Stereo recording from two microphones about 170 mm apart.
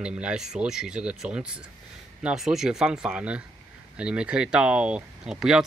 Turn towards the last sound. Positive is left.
turn(degrees=-5)  # may be behind; listen again after turning